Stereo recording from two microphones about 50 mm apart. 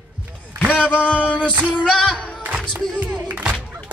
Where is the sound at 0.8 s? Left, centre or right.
Left.